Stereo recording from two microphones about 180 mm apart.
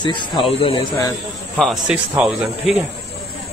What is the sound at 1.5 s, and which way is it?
Speech, centre (ahead or behind).